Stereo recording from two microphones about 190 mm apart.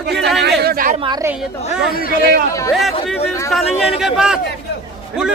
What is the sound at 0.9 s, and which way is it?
Speech, 25° right (ahead or behind).